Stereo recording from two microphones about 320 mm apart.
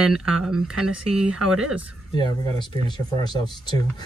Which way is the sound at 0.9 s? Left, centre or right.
Centre.